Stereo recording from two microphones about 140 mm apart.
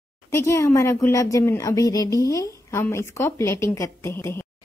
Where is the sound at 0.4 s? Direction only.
20° left (ahead or behind).